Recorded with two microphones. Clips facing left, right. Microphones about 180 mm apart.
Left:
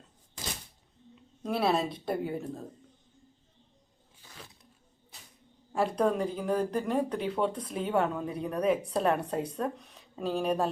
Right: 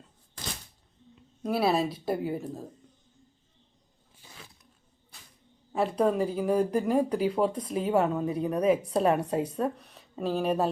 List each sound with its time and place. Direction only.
1.4 s speech: 5° right (ahead or behind)
5.7 s speech: 5° right (ahead or behind)